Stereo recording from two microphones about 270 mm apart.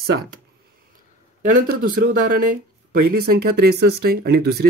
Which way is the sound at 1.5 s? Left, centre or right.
Right.